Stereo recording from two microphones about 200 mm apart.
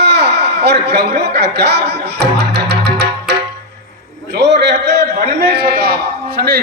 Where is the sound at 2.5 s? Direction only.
55° right (ahead or behind).